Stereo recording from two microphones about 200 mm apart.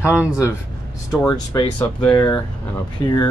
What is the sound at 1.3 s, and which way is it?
Speech, 20° left (ahead or behind).